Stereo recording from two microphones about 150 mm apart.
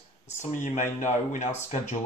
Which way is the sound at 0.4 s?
55° left (ahead or behind).